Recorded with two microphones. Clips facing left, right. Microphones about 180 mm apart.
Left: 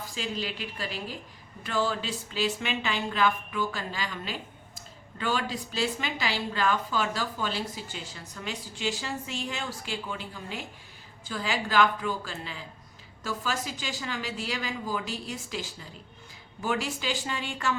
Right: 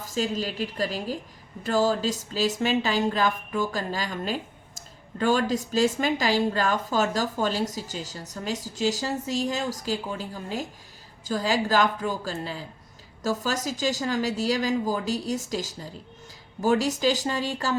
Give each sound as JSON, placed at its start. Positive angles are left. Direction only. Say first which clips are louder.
{"t": 0.0, "sound": "a woman's voice", "louder": "right 6 dB", "side_deg": -45}